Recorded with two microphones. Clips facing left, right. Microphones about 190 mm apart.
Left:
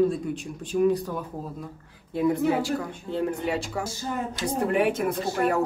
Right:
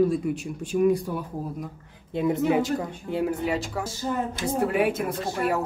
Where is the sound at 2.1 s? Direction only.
20° right (ahead or behind).